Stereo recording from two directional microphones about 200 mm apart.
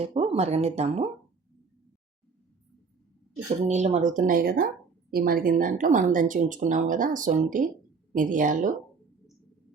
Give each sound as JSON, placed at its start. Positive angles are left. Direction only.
{"t": 0.0, "sound": "speech", "side_deg": -30}
{"t": 3.7, "sound": "speech", "side_deg": -35}